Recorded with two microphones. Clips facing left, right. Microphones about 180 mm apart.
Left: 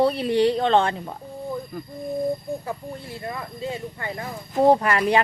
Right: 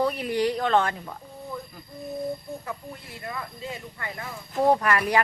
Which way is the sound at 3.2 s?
30° left (ahead or behind).